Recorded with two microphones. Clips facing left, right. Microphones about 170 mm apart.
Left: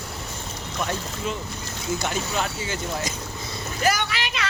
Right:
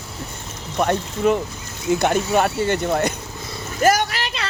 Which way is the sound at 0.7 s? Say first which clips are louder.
Right 9 dB; 60° right (ahead or behind).